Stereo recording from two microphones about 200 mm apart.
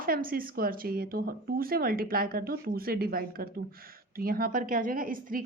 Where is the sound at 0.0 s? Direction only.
45° right (ahead or behind).